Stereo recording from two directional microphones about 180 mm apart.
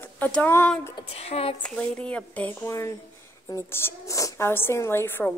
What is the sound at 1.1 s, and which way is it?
Speech, 35° left (ahead or behind).